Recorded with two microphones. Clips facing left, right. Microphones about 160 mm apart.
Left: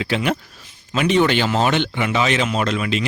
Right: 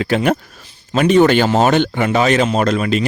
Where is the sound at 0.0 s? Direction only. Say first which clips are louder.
Right 5 dB; 45° right (ahead or behind).